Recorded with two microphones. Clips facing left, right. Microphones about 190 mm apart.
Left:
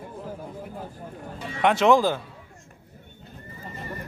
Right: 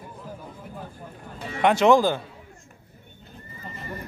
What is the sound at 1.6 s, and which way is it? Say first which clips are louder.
Speech: right 1 dB; centre (ahead or behind).